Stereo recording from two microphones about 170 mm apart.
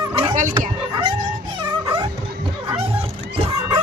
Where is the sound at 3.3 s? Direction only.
30° right (ahead or behind).